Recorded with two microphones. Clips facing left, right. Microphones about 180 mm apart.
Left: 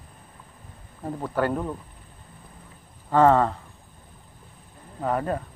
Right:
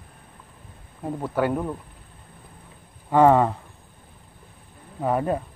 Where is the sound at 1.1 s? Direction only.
10° right (ahead or behind).